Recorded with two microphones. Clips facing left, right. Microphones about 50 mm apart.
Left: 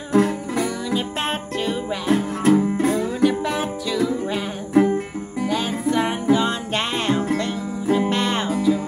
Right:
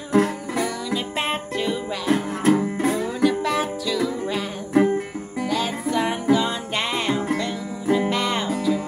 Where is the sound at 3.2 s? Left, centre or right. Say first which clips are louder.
Right 2 dB; centre.